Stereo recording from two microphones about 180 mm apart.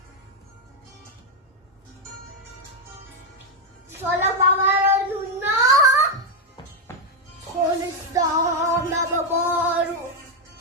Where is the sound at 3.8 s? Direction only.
10° right (ahead or behind).